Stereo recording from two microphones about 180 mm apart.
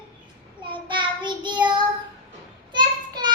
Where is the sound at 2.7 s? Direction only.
25° right (ahead or behind).